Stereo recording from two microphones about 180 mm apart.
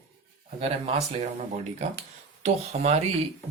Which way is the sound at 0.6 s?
30° right (ahead or behind).